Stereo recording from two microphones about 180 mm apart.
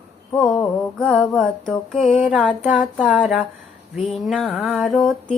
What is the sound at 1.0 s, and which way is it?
Music, centre (ahead or behind).